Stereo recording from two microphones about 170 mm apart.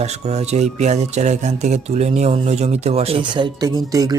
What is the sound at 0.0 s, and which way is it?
Speech, 40° right (ahead or behind).